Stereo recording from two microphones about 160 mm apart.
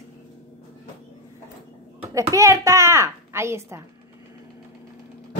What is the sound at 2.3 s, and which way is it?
A woman's voice, 20° right (ahead or behind).